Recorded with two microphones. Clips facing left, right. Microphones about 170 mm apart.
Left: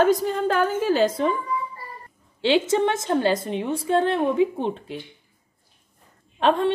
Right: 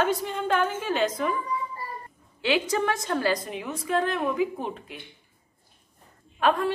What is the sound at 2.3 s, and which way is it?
A woman's voice, 30° left (ahead or behind).